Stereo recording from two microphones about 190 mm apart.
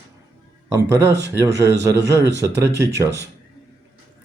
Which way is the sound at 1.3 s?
15° right (ahead or behind).